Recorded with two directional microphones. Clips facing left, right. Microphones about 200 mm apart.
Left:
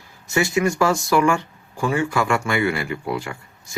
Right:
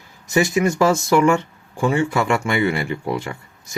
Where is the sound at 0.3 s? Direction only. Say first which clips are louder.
Right 2 dB; 20° right (ahead or behind).